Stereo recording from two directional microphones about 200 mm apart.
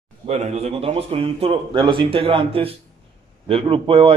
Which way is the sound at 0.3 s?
35° right (ahead or behind).